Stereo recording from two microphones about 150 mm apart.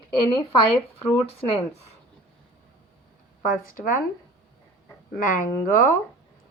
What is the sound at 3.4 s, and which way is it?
Speech, 65° left (ahead or behind).